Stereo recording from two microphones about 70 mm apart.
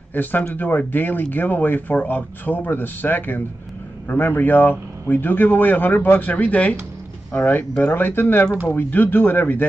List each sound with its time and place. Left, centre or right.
0.1 s speech: left